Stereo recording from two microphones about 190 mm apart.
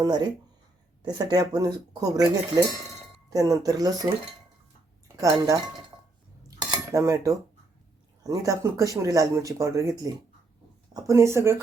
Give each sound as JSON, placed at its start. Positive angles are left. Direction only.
{"t": 0.0, "sound": "speech", "side_deg": -20}
{"t": 5.1, "sound": "speech", "side_deg": -15}
{"t": 6.6, "sound": "cutlery", "side_deg": -20}
{"t": 8.2, "sound": "speech", "side_deg": -20}
{"t": 10.9, "sound": "speech", "side_deg": -15}